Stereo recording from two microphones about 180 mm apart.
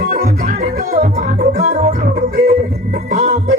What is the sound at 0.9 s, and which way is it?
Music, 40° right (ahead or behind).